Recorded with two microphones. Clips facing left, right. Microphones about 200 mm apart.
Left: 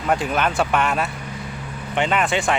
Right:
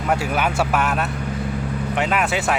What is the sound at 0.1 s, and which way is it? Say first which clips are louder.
Speech: left 1 dB; 10° right (ahead or behind).